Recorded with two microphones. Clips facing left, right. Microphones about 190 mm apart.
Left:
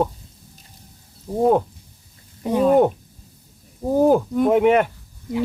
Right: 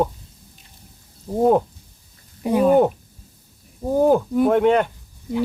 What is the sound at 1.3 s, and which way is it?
Speech, centre (ahead or behind).